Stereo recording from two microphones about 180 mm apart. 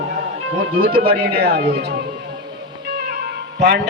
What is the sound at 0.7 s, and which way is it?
Speech, 55° right (ahead or behind).